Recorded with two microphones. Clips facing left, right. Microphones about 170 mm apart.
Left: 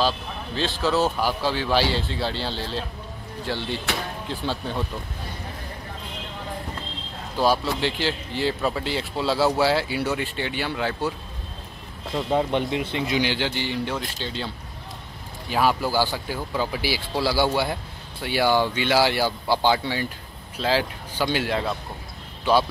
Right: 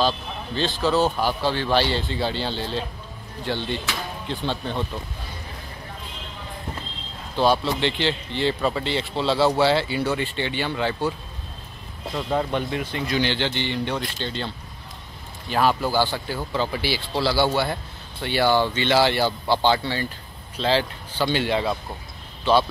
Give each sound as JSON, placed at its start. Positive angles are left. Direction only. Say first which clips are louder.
{"t": 0.6, "sound": "speech", "louder": "right 1 dB", "side_deg": 0}
{"t": 7.3, "sound": "speech", "louder": "right 1 dB", "side_deg": 5}
{"t": 12.2, "sound": "speech", "louder": "left 2 dB", "side_deg": 15}
{"t": 13.2, "sound": "speech", "louder": "right 1 dB", "side_deg": 10}
{"t": 15.5, "sound": "speech", "louder": "right 1 dB", "side_deg": 5}